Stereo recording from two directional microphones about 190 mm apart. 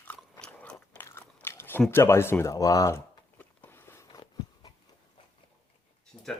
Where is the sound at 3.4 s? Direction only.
10° left (ahead or behind).